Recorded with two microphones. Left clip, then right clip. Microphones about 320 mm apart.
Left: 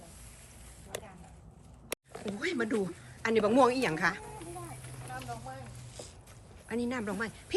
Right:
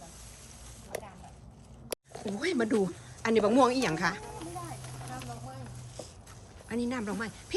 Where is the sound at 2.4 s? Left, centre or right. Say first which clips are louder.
Right 3 dB; centre.